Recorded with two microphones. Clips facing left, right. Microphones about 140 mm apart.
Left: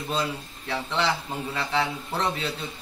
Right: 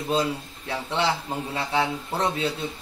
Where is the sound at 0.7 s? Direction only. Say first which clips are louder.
Right 1 dB; 15° right (ahead or behind).